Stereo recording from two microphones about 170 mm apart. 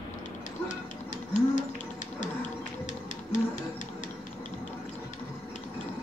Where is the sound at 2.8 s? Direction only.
45° left (ahead or behind).